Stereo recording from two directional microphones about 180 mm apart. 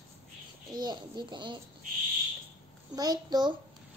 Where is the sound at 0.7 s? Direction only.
25° right (ahead or behind).